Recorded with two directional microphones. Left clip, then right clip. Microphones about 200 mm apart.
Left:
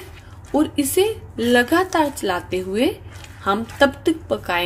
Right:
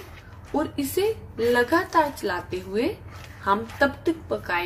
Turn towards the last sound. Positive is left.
turn(degrees=40)  # may be behind; listen again after turning